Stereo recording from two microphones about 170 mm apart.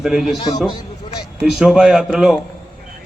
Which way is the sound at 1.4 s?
5° right (ahead or behind).